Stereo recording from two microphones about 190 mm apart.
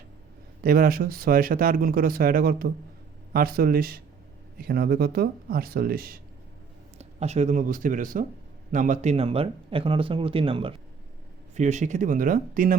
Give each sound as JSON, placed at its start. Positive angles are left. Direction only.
{"t": 0.6, "sound": "speech", "side_deg": -50}
{"t": 7.0, "sound": "speech", "side_deg": -35}
{"t": 11.5, "sound": "speech", "side_deg": -40}